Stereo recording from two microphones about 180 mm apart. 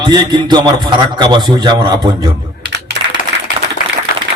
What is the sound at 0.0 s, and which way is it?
A man's voice, 25° right (ahead or behind).